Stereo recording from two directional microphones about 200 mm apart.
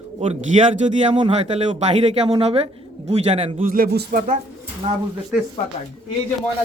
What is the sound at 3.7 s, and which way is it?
Speech, 45° right (ahead or behind).